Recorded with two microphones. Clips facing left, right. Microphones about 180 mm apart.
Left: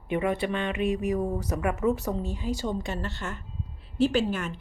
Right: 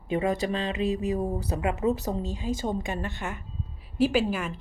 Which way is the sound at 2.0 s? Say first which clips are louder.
Even; 50° right (ahead or behind).